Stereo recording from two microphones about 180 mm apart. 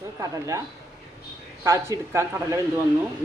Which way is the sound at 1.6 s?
15° right (ahead or behind).